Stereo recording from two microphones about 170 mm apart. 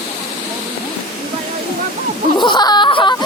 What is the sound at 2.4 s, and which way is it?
Speech, 25° left (ahead or behind).